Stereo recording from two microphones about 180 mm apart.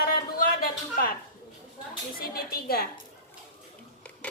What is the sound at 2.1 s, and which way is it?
Speech, 55° left (ahead or behind).